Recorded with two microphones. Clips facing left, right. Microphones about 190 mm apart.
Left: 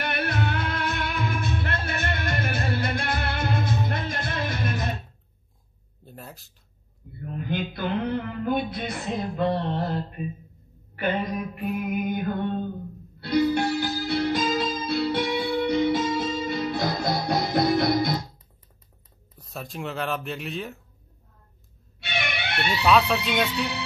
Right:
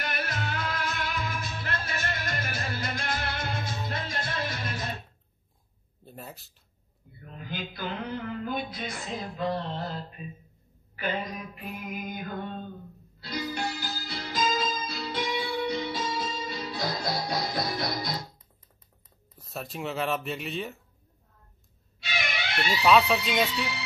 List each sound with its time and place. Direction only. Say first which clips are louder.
0.0 s music: left 6 dB; 60° left (ahead or behind)
6.0 s a sound: left 1 dB; centre (ahead or behind)
7.2 s music: left 8 dB; 55° left (ahead or behind)
19.3 s speech: left 1 dB; centre (ahead or behind)
22.0 s music: left 3 dB; 60° left (ahead or behind)
22.7 s speech: left 1 dB; centre (ahead or behind)